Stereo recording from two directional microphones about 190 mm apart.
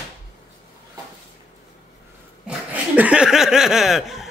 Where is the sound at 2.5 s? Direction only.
10° right (ahead or behind).